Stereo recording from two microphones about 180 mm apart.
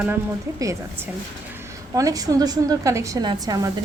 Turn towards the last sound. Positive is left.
turn(degrees=-20)  # may be behind; listen again after turning